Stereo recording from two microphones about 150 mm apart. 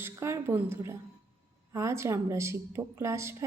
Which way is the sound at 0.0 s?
20° right (ahead or behind).